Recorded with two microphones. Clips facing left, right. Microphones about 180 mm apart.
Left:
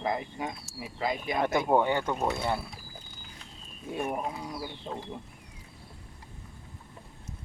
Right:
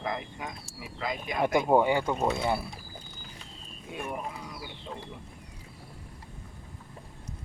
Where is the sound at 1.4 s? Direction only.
10° right (ahead or behind).